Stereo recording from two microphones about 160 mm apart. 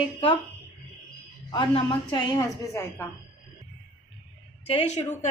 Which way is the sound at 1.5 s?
30° left (ahead or behind).